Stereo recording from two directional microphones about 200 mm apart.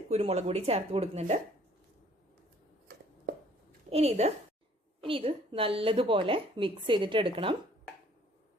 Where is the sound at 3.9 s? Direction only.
30° right (ahead or behind).